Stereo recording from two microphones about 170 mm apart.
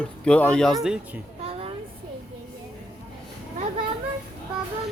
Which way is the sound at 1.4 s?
35° right (ahead or behind).